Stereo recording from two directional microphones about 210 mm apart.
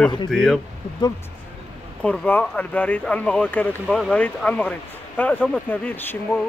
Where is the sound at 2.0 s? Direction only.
5° left (ahead or behind).